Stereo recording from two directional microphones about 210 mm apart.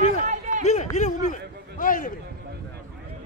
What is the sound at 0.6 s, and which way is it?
Run, 30° left (ahead or behind).